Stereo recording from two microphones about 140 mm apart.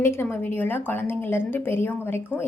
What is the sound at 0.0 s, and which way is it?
A woman's voice, 15° left (ahead or behind).